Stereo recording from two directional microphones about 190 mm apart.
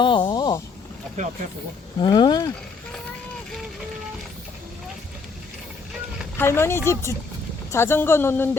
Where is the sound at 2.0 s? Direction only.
25° left (ahead or behind).